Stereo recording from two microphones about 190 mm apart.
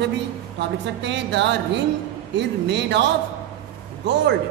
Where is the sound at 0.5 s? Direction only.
65° right (ahead or behind).